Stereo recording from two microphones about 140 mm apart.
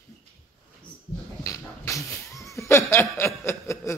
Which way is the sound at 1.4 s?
25° left (ahead or behind).